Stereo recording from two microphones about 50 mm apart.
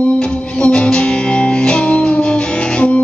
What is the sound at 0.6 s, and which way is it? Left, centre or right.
Music, left.